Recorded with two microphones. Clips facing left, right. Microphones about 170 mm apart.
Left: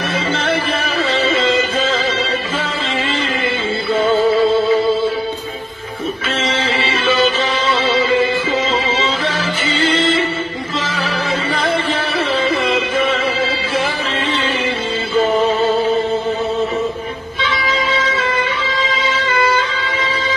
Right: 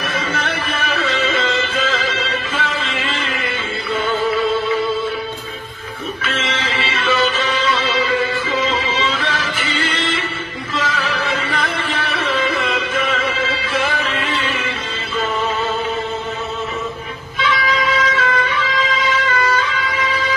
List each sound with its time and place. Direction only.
0.1 s music: 30° left (ahead or behind)
3.9 s music: 30° left (ahead or behind)
6.2 s music: 30° left (ahead or behind)
17.4 s music: 25° left (ahead or behind)